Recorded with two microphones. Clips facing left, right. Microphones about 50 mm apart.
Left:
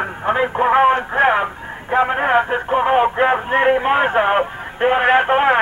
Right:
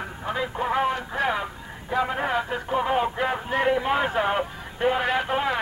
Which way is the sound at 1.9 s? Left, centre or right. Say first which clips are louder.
Left 9 dB; left.